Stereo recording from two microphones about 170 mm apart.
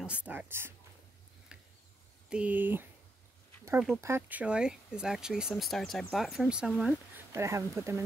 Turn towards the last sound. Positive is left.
turn(degrees=-15)  # may be behind; listen again after turning